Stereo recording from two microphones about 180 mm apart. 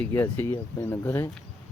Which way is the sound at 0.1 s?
15° left (ahead or behind).